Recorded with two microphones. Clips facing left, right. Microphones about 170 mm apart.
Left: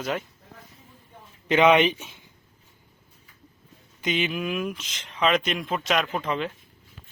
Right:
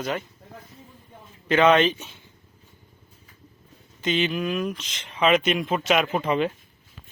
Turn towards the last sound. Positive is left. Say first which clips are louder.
# right 5 dB
turn(degrees=-15)  # may be behind; listen again after turning